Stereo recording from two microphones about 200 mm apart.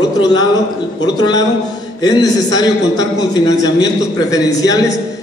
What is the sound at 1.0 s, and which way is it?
A man's voice, 20° left (ahead or behind).